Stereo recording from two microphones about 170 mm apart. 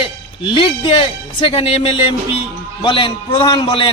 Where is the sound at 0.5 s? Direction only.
30° left (ahead or behind).